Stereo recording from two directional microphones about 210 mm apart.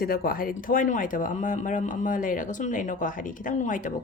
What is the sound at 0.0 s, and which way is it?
Speech, 45° left (ahead or behind).